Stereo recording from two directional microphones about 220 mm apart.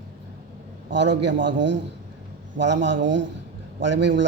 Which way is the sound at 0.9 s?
50° right (ahead or behind).